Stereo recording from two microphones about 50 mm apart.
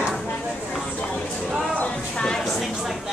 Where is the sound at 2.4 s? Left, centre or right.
Centre.